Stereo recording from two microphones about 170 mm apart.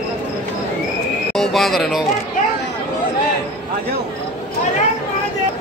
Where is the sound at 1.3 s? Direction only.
Centre (ahead or behind).